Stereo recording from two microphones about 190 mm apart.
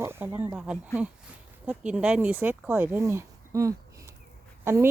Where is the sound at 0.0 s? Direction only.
15° right (ahead or behind).